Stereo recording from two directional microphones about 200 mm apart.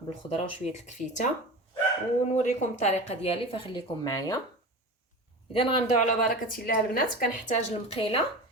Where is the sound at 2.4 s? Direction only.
35° left (ahead or behind); by 4.4 s 20° left (ahead or behind).